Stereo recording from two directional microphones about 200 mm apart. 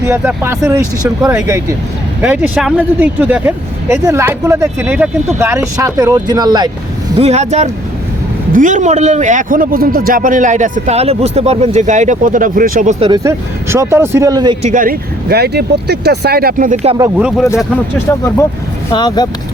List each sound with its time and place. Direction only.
0.0 s speech: 10° right (ahead or behind)
7.2 s a man's voice: 35° right (ahead or behind)
13.1 s speech: 15° right (ahead or behind)
14.6 s speech: 40° right (ahead or behind)
17.2 s speech: 5° right (ahead or behind)
18.9 s speech: 20° left (ahead or behind)